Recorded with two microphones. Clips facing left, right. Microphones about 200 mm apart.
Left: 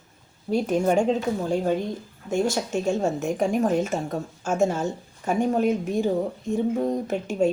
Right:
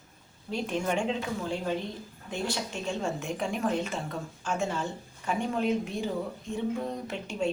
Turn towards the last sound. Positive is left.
turn(degrees=45)  # may be behind; listen again after turning